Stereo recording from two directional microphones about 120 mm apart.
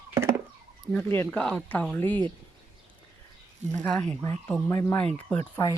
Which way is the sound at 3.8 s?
10° left (ahead or behind).